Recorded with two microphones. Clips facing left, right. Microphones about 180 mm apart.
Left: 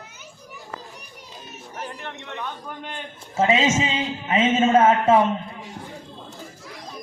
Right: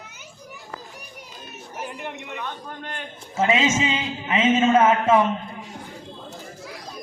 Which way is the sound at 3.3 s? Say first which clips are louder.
Left 1 dB; 35° left (ahead or behind).